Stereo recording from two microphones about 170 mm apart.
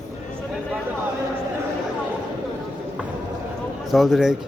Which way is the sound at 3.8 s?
Centre (ahead or behind).